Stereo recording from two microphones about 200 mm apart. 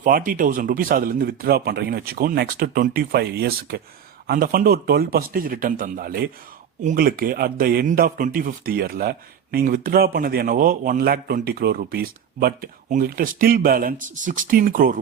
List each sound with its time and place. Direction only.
0.0 s speech: 45° right (ahead or behind)